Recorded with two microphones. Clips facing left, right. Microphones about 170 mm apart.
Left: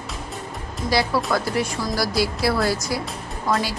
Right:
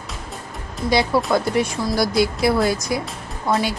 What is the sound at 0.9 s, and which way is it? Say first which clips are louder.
Speech: right 3 dB; 20° right (ahead or behind).